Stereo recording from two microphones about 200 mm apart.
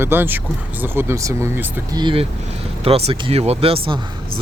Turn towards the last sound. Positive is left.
turn(degrees=-25)  # may be behind; listen again after turning